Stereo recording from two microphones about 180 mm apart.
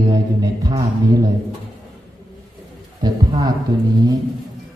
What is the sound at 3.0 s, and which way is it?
Mantra, 25° right (ahead or behind).